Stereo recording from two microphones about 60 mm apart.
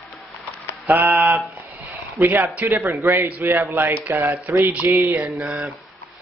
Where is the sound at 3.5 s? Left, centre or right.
Right.